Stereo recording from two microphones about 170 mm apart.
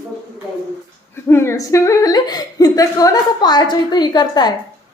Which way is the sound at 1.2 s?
15° left (ahead or behind).